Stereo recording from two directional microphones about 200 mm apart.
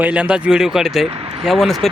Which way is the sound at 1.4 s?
Centre (ahead or behind).